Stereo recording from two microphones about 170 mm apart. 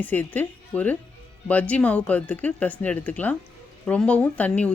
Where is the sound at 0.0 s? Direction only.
10° left (ahead or behind).